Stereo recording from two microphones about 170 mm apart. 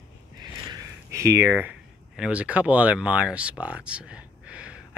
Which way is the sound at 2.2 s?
5° right (ahead or behind).